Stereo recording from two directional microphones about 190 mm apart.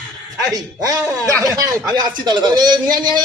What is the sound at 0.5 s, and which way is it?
A man's voice, 20° right (ahead or behind).